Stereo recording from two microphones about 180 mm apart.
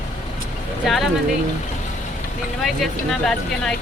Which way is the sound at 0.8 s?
Centre (ahead or behind).